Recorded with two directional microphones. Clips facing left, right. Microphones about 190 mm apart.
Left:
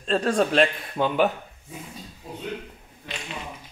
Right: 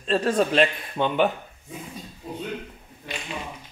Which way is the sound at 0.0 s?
5° right (ahead or behind).